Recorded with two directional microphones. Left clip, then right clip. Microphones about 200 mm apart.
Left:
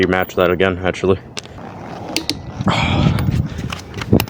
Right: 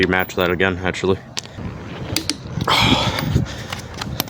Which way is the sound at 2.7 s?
20° right (ahead or behind).